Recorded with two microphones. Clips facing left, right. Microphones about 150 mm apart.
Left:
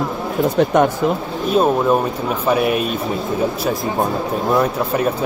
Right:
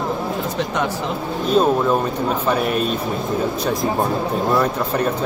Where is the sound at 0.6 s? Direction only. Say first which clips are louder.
Left 9 dB; 50° left (ahead or behind).